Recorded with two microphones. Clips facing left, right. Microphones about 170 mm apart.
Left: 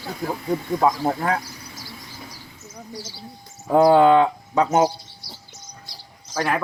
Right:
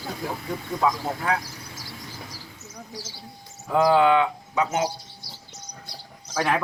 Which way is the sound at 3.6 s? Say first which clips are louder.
Left 5 dB; 40° left (ahead or behind).